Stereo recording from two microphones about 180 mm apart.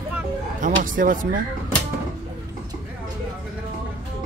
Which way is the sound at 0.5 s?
45° right (ahead or behind).